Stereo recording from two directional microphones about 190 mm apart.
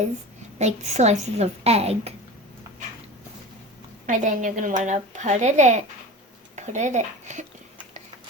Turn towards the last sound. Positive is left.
turn(degrees=-40)  # may be behind; listen again after turning